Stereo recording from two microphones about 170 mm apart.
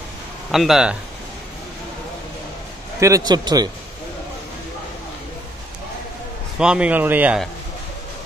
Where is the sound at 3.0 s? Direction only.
20° right (ahead or behind).